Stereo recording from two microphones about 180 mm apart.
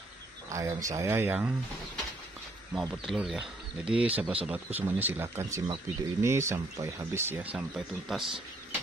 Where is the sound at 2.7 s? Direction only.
5° right (ahead or behind).